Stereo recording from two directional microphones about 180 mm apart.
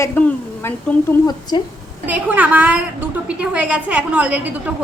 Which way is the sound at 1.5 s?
25° left (ahead or behind).